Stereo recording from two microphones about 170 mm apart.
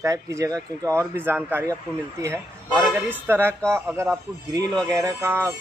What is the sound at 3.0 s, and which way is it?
Speech, 10° right (ahead or behind).